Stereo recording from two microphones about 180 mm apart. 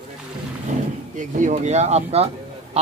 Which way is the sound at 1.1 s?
40° right (ahead or behind).